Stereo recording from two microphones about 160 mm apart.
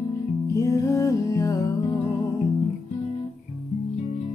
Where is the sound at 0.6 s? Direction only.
20° left (ahead or behind).